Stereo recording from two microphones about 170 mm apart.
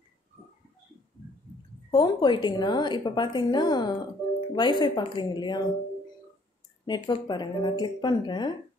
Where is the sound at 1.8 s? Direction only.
25° left (ahead or behind).